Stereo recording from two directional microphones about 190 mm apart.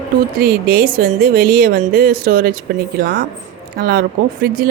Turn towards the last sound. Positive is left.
turn(degrees=-50)  # may be behind; listen again after turning